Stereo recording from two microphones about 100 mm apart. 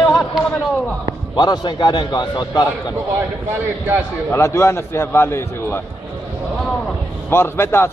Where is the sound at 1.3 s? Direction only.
45° left (ahead or behind).